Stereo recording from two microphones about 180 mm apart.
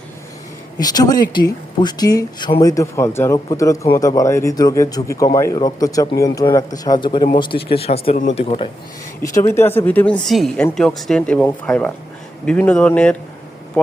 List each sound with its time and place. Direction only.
0.8 s speech: 20° left (ahead or behind)
9.2 s speech: 20° left (ahead or behind)